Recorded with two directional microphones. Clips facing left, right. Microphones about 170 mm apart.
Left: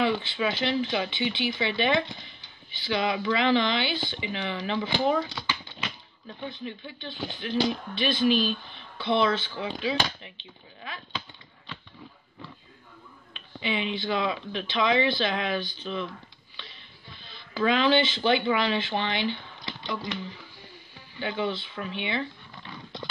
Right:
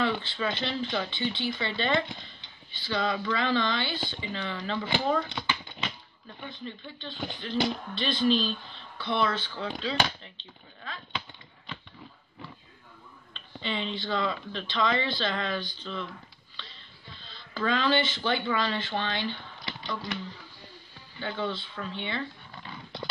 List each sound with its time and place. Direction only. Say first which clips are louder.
0.0 s speech: left 3 dB; 15° left (ahead or behind)
6.6 s speech: left 2 dB; 10° left (ahead or behind)
13.3 s speech: left 3 dB; 10° left (ahead or behind)
17.2 s a sound: left 5 dB; 15° left (ahead or behind)
18.2 s speech: left 4 dB; 15° left (ahead or behind)
21.2 s speech: left 3 dB; 15° left (ahead or behind)